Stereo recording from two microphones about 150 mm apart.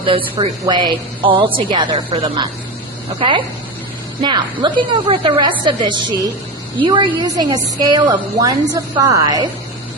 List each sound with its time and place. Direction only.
0.0 s a woman's voice: 35° right (ahead or behind)